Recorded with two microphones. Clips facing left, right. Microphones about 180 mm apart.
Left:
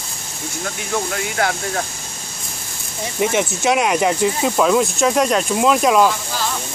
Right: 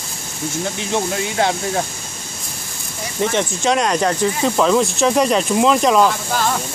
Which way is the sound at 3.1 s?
10° left (ahead or behind).